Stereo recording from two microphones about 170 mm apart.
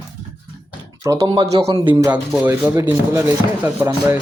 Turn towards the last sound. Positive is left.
turn(degrees=-10)  # may be behind; listen again after turning